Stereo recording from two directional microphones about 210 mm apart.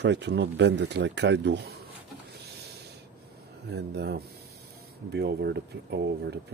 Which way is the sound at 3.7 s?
50° right (ahead or behind).